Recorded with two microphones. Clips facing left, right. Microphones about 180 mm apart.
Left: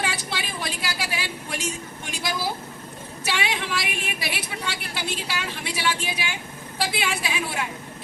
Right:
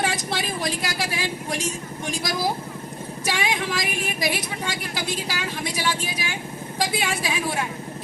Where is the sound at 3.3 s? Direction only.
40° right (ahead or behind).